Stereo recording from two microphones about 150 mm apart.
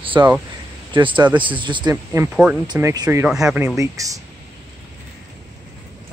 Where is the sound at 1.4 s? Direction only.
35° right (ahead or behind).